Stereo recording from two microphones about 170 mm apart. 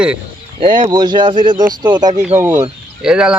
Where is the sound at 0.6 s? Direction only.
30° right (ahead or behind).